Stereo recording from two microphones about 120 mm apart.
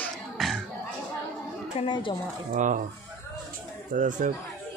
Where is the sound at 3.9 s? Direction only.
90° right.